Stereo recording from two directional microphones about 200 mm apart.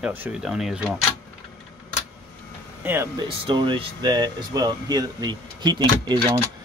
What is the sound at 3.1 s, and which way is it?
Speech, 25° right (ahead or behind).